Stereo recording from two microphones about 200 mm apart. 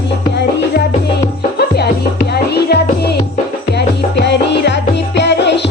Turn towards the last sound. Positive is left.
turn(degrees=60)  # may be behind; listen again after turning